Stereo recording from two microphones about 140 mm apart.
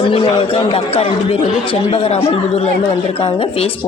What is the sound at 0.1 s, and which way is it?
A man's voice, 40° left (ahead or behind).